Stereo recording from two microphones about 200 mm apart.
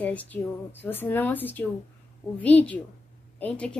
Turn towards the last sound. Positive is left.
turn(degrees=5)  # may be behind; listen again after turning